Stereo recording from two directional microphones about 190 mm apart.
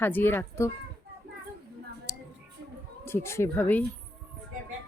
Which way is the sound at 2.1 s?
15° left (ahead or behind).